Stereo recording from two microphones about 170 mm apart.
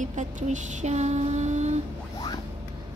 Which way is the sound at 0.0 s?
45° right (ahead or behind).